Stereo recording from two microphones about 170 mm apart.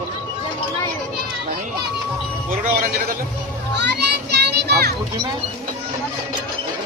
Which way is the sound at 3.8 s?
85° right.